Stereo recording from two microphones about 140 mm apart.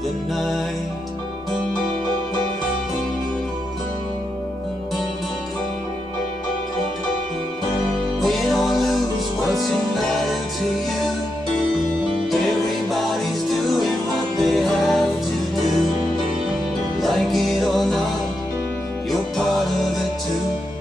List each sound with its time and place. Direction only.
8.2 s music: centre (ahead or behind)
12.3 s music: centre (ahead or behind)
14.4 s music: centre (ahead or behind)
17.0 s music: centre (ahead or behind)
19.0 s music: centre (ahead or behind)